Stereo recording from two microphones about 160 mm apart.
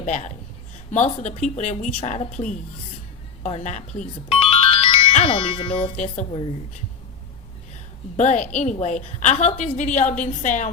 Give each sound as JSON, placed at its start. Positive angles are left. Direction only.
{"t": 0.0, "sound": "a woman's voice", "side_deg": 45}
{"t": 3.4, "sound": "music", "side_deg": 50}
{"t": 5.3, "sound": "speech", "side_deg": 30}
{"t": 8.1, "sound": "a woman's voice", "side_deg": 45}